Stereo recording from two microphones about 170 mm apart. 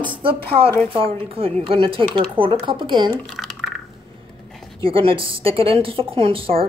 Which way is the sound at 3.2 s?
5° left (ahead or behind).